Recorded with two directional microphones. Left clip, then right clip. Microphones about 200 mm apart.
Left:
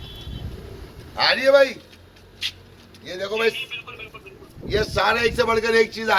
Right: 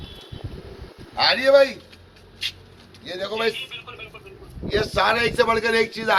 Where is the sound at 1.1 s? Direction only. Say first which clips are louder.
Even; 40° right (ahead or behind).